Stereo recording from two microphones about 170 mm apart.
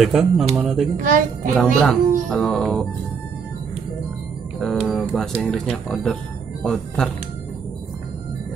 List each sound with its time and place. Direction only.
0.0 s speech: centre (ahead or behind)
1.0 s a woman's voice: 55° right (ahead or behind)
1.6 s speech: centre (ahead or behind)
4.6 s speech: centre (ahead or behind)